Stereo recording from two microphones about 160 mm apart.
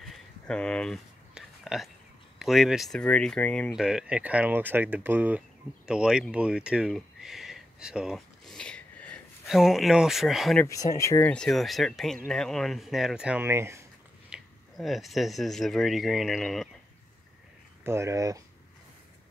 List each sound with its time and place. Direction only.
0.0 s a sound: 5° left (ahead or behind)
2.3 s speech: centre (ahead or behind)
3.7 s speech: 5° right (ahead or behind)
10.7 s speech: 20° left (ahead or behind)
11.3 s speech: centre (ahead or behind); by 13.8 s 15° right (ahead or behind)
14.3 s speech: centre (ahead or behind)
17.8 s speech: 15° right (ahead or behind)